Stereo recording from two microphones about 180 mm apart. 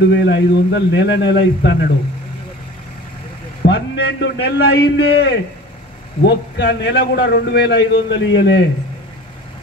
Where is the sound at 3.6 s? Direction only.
70° left (ahead or behind).